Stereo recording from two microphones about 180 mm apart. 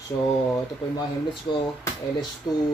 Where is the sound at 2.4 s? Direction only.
20° left (ahead or behind).